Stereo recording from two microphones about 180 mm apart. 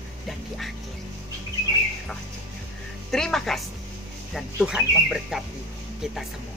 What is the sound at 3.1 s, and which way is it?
Speech, 5° left (ahead or behind).